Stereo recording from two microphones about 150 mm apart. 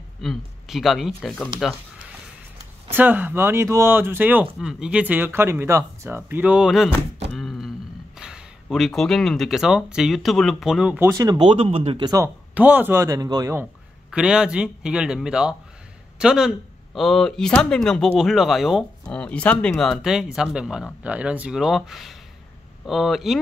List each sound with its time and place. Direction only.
0.2 s speech: centre (ahead or behind)
2.9 s speech: 15° right (ahead or behind)
7.3 s a sound: centre (ahead or behind)
8.2 s speech: 5° right (ahead or behind)
11.0 s speech: 20° right (ahead or behind); by 12.1 s 40° right (ahead or behind)
12.5 s speech: 10° right (ahead or behind)
14.1 s speech: 5° right (ahead or behind)